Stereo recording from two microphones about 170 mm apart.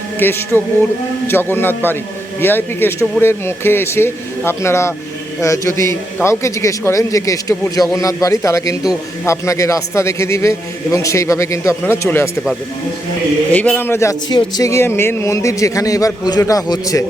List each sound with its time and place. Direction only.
0.2 s a man's voice: 10° left (ahead or behind)
13.5 s a man's voice: 10° left (ahead or behind)